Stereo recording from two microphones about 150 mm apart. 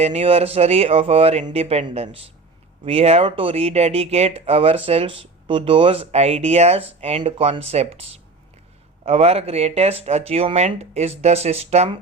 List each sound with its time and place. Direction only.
0.0 s speech: 45° right (ahead or behind)